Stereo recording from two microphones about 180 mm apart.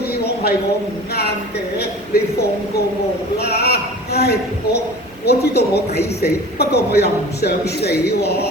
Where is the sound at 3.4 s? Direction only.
65° left (ahead or behind).